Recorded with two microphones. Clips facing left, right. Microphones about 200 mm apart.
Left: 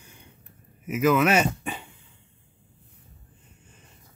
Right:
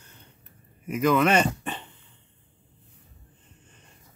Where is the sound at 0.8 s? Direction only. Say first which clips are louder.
Left 1 dB; 5° left (ahead or behind).